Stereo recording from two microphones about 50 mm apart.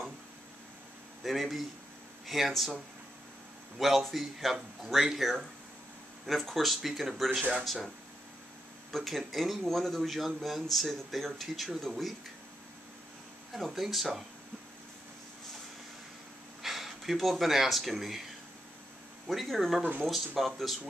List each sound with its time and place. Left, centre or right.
1.2 s a man's voice: centre
3.7 s a man's voice: centre
8.9 s a man's voice: centre
13.5 s a man's voice: centre
16.6 s speech: centre
19.2 s a man's voice: centre